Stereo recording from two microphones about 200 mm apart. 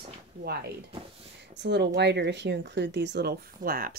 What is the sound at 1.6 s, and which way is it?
Speech, 55° right (ahead or behind).